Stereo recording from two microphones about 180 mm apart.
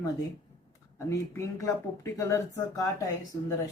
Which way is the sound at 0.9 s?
15° left (ahead or behind).